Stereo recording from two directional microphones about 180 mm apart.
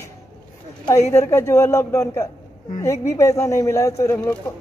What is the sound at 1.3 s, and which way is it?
Speech, 15° left (ahead or behind).